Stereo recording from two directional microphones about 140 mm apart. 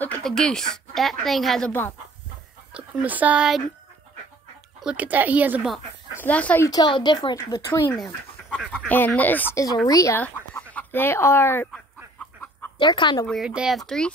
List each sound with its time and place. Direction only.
0.0 s a woman's voice: 5° left (ahead or behind)
1.7 s speech: 15° left (ahead or behind)
2.7 s speech: 10° right (ahead or behind)
4.8 s speech: 10° right (ahead or behind)
6.2 s speech: 10° left (ahead or behind)
6.6 s speech: 30° left (ahead or behind)
8.7 s speech: 10° left (ahead or behind)
10.1 s speech: 10° left (ahead or behind)
12.7 s speech: 35° left (ahead or behind)
13.3 s speech: 5° right (ahead or behind)